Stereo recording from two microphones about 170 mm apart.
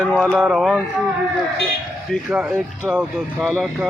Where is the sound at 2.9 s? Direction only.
Centre (ahead or behind).